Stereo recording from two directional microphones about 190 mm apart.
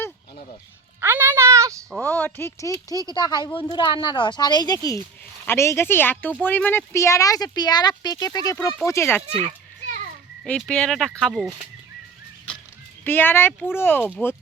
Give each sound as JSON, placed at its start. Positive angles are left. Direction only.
{"t": 1.0, "sound": "music", "side_deg": -10}
{"t": 1.9, "sound": "speech", "side_deg": 10}
{"t": 2.9, "sound": "speech", "side_deg": -20}
{"t": 3.2, "sound": "speech", "side_deg": 20}
{"t": 9.2, "sound": "a child's voice", "side_deg": -35}
{"t": 10.4, "sound": "speech", "side_deg": 5}
{"t": 13.1, "sound": "speech", "side_deg": 10}